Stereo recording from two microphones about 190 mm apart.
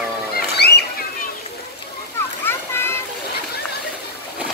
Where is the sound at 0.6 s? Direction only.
60° left (ahead or behind).